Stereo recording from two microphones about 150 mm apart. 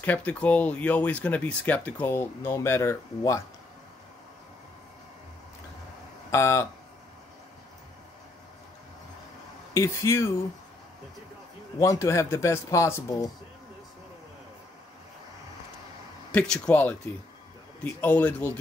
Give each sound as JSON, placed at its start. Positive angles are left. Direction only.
{"t": 0.0, "sound": "speech", "side_deg": 10}
{"t": 6.3, "sound": "speech", "side_deg": 20}
{"t": 9.8, "sound": "speech", "side_deg": 20}
{"t": 11.8, "sound": "speech", "side_deg": 20}
{"t": 16.3, "sound": "speech", "side_deg": 5}